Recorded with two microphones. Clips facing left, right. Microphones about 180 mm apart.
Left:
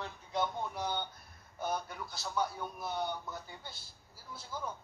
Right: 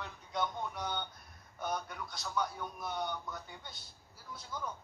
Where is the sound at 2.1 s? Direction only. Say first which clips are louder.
Left 1 dB; 30° left (ahead or behind).